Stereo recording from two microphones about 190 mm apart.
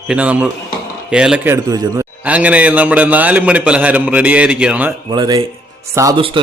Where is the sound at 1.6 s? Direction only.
20° right (ahead or behind).